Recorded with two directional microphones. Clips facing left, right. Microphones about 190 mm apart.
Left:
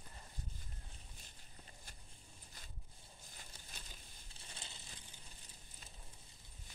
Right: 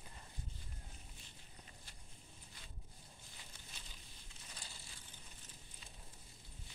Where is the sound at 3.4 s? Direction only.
45° left (ahead or behind).